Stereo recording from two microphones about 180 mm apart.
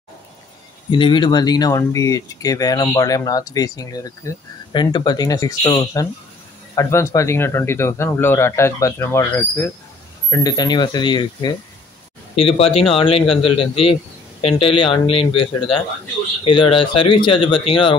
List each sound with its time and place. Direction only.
0.8 s speech: 25° left (ahead or behind)
16.4 s speech: 30° left (ahead or behind)